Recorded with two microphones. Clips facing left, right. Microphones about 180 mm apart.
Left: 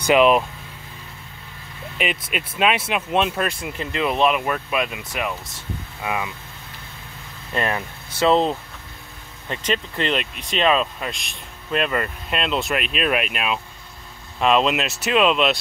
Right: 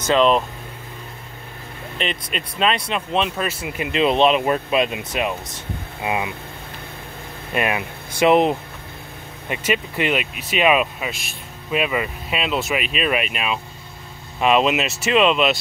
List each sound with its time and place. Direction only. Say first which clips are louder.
0.0 s speech: left 1 dB; 10° left (ahead or behind)
2.0 s speech: left 1 dB; 5° left (ahead or behind); by 6.3 s 20° right (ahead or behind)
7.5 s speech: right 2 dB; 15° right (ahead or behind)